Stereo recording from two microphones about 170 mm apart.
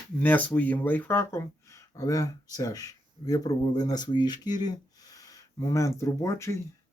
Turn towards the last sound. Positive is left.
turn(degrees=15)  # may be behind; listen again after turning